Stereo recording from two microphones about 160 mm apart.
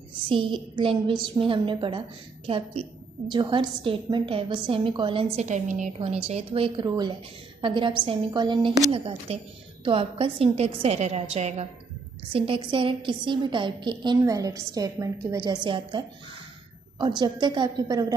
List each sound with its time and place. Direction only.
0.3 s a woman's voice: 30° right (ahead or behind)
17.2 s a woman's voice: 25° right (ahead or behind)